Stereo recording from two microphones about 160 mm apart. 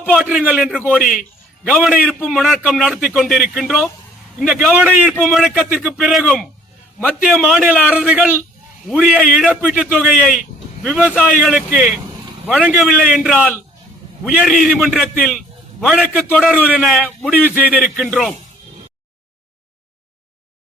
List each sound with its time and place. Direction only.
0.2 s a man's voice: 5° right (ahead or behind)
1.9 s a man's voice: 10° right (ahead or behind)